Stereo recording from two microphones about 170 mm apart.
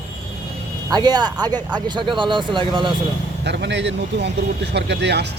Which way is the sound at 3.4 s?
90° right.